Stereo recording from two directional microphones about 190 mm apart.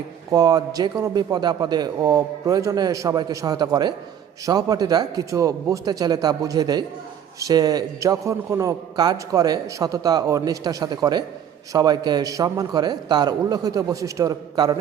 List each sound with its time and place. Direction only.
0.3 s a man's voice: 20° right (ahead or behind)